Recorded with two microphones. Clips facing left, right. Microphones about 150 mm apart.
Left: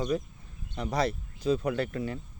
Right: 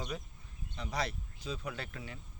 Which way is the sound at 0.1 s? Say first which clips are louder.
Left 12 dB; 45° left (ahead or behind).